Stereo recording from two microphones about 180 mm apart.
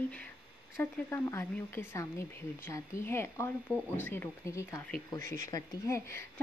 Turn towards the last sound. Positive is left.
turn(degrees=15)  # may be behind; listen again after turning